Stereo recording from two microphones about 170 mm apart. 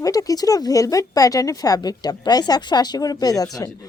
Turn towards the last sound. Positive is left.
turn(degrees=20)  # may be behind; listen again after turning